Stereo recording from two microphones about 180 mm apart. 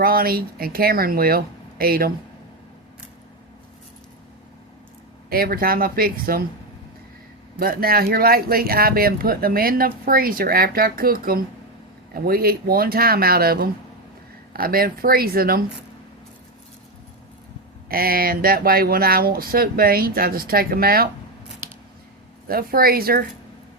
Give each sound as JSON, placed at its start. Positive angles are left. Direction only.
{"t": 0.0, "sound": "speech", "side_deg": -55}
{"t": 5.3, "sound": "speech", "side_deg": -55}
{"t": 7.6, "sound": "speech", "side_deg": -55}
{"t": 17.8, "sound": "speech", "side_deg": -55}
{"t": 22.4, "sound": "speech", "side_deg": -55}